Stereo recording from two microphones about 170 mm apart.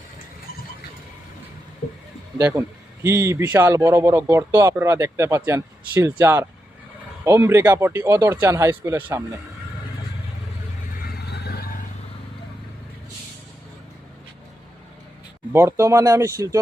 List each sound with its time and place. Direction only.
2.4 s a man's voice: 15° right (ahead or behind)
11.0 s vehicle: 75° left (ahead or behind); by 11.9 s 55° left (ahead or behind)
15.5 s a man's voice: 15° right (ahead or behind)